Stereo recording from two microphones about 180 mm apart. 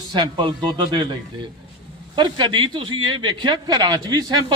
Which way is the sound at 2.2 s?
25° right (ahead or behind).